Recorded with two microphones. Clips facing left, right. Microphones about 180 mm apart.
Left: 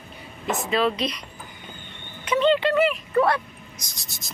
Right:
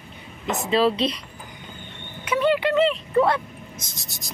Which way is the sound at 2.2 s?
10° right (ahead or behind).